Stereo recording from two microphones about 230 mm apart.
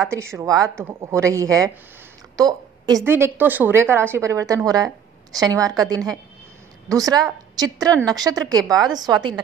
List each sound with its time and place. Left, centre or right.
0.1 s a woman's voice: centre
2.3 s a sound: centre
3.1 s a woman's voice: centre